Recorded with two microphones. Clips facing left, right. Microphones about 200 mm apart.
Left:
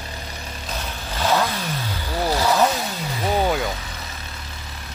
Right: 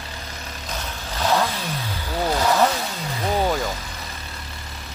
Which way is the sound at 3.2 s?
Centre (ahead or behind).